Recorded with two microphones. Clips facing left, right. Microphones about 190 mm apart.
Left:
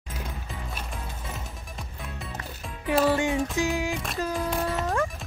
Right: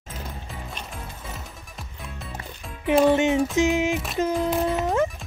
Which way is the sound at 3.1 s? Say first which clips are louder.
Right 5 dB; 20° right (ahead or behind).